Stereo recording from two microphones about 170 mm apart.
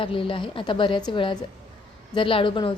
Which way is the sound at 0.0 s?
30° left (ahead or behind).